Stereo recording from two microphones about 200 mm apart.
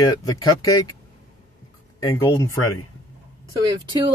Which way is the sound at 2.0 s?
15° left (ahead or behind).